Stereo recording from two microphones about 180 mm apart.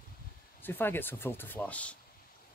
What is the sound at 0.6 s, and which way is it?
Speech, 10° left (ahead or behind).